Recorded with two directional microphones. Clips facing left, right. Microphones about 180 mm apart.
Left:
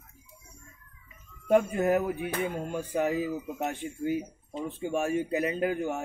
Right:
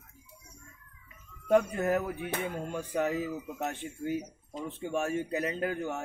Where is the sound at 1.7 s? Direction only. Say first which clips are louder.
Left 4 dB; 15° left (ahead or behind).